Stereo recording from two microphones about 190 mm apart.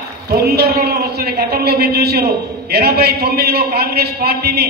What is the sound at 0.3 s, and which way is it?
A man's voice, 55° right (ahead or behind).